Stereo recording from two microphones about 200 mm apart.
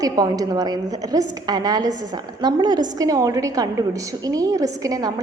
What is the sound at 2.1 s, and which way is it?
A woman's voice, 20° right (ahead or behind).